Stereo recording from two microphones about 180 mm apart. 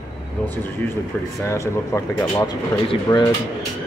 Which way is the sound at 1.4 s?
15° left (ahead or behind).